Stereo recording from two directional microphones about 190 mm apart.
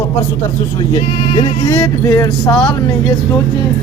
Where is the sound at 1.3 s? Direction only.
25° left (ahead or behind).